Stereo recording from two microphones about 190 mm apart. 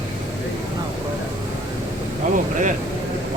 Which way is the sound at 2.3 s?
45° right (ahead or behind).